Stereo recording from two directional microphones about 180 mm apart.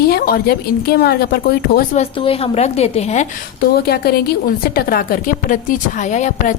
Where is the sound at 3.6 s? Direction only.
60° left (ahead or behind).